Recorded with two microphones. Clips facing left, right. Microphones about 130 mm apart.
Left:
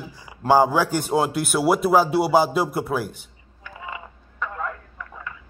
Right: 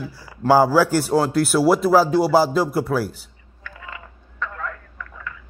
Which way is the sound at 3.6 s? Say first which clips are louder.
Left 3 dB; 15° left (ahead or behind).